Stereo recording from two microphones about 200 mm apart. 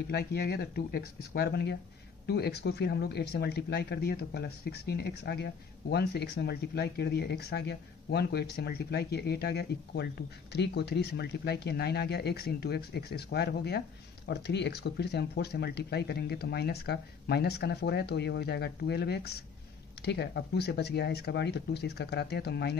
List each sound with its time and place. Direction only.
0.1 s speech: 50° left (ahead or behind)